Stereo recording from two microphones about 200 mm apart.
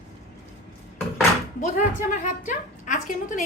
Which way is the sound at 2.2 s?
40° left (ahead or behind).